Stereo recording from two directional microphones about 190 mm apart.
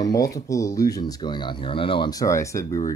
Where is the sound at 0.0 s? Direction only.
20° left (ahead or behind).